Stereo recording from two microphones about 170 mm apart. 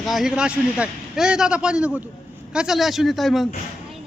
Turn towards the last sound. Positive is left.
turn(degrees=0)  # may be behind; listen again after turning